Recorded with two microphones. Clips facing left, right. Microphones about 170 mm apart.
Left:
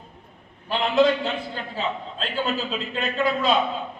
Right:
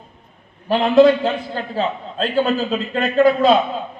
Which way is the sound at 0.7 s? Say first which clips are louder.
Right 8 dB; 50° right (ahead or behind).